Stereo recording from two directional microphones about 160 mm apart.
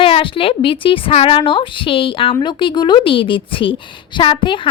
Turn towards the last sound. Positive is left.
turn(degrees=30)  # may be behind; listen again after turning